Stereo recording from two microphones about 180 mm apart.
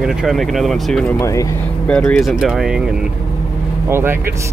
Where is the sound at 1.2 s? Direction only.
15° left (ahead or behind).